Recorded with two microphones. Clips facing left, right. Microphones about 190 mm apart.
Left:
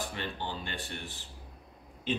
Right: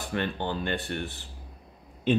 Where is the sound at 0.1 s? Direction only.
55° right (ahead or behind).